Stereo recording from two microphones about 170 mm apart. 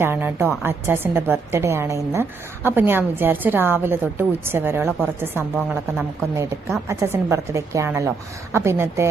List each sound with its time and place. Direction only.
0.0 s a woman's voice: 15° right (ahead or behind)